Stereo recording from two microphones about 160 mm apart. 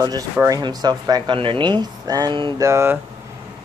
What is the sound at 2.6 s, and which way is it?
Speech, 15° right (ahead or behind).